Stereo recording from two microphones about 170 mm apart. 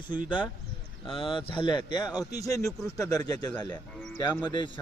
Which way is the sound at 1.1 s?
30° left (ahead or behind).